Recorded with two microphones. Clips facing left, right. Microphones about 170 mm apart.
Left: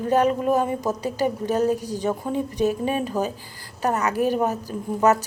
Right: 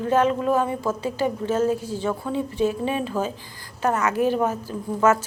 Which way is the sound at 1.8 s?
15° left (ahead or behind).